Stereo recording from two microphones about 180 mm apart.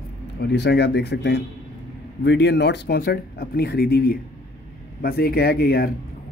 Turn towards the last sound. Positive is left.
turn(degrees=60)  # may be behind; listen again after turning